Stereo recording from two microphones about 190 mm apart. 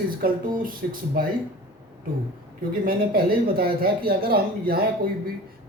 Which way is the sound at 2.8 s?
50° right (ahead or behind).